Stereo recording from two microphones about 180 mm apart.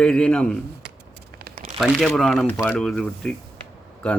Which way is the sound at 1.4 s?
50° right (ahead or behind).